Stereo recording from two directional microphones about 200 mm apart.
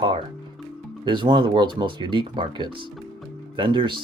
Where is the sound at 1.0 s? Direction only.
25° right (ahead or behind).